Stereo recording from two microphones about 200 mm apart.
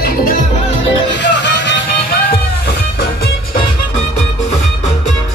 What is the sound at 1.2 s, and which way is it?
Music, 60° left (ahead or behind).